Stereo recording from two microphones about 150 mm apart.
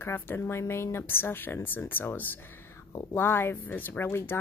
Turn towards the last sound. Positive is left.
turn(degrees=15)  # may be behind; listen again after turning